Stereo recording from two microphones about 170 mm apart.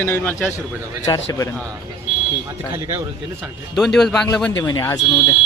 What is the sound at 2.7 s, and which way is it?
Speech, 15° right (ahead or behind).